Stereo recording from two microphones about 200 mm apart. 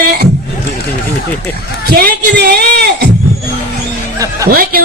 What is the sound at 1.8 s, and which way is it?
A woman's voice, 50° right (ahead or behind).